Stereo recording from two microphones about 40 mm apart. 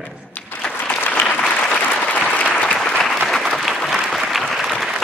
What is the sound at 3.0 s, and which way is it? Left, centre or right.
Applause, centre.